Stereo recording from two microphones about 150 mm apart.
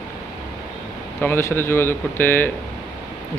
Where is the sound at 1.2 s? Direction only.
15° left (ahead or behind).